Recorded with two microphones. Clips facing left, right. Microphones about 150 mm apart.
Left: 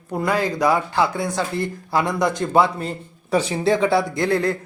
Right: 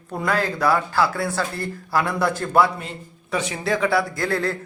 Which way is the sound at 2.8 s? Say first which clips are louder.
Left 6 dB; 35° left (ahead or behind).